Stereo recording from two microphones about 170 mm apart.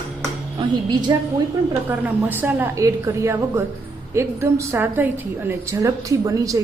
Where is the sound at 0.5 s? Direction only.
25° right (ahead or behind).